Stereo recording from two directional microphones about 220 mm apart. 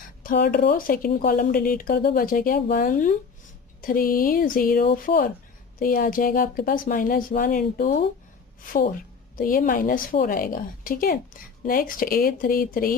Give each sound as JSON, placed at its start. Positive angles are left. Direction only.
{"t": 0.2, "sound": "speech", "side_deg": 45}